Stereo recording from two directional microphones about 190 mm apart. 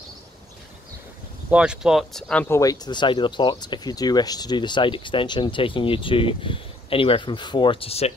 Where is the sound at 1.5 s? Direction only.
5° right (ahead or behind).